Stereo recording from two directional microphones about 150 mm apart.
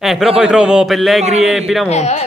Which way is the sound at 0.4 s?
5° right (ahead or behind).